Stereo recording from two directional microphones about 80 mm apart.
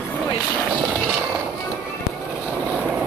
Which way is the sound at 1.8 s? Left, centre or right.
Centre.